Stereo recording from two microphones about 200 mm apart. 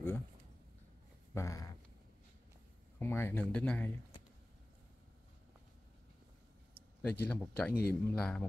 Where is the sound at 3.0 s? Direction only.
10° left (ahead or behind).